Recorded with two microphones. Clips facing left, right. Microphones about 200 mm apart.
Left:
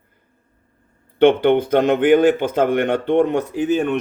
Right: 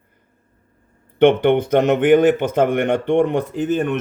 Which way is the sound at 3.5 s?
5° left (ahead or behind).